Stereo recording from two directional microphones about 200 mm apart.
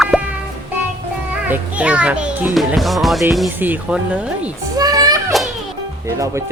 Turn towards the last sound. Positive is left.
turn(degrees=-15)  # may be behind; listen again after turning